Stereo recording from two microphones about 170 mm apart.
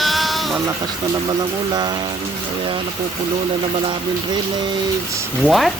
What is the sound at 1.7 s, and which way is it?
Speech, 25° right (ahead or behind).